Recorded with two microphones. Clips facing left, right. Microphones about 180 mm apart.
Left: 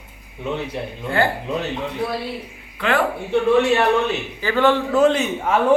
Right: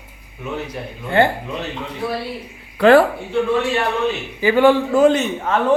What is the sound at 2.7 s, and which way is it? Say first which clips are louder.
Speech: right 11 dB; 40° right (ahead or behind).